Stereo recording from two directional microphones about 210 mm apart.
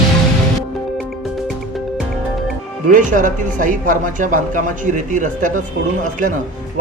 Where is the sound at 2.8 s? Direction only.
40° right (ahead or behind).